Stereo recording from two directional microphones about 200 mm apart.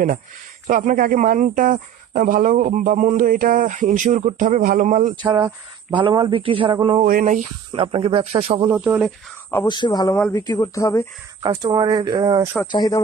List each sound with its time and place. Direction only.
0.7 s speech: 40° right (ahead or behind)
5.1 s speech: 20° right (ahead or behind)
7.1 s speech: 40° right (ahead or behind)
7.7 s speech: 25° right (ahead or behind)
8.7 s speech: 5° right (ahead or behind)
9.7 s speech: 20° left (ahead or behind)
11.4 s speech: 20° right (ahead or behind)
12.7 s speech: 20° left (ahead or behind)